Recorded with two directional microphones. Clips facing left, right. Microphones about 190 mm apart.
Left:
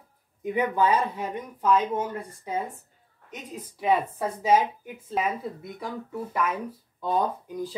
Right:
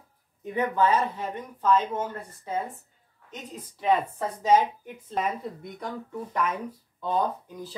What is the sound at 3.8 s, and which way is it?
Speech, 10° left (ahead or behind).